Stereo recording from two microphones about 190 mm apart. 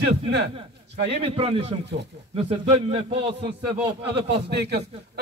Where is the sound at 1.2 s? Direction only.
30° right (ahead or behind).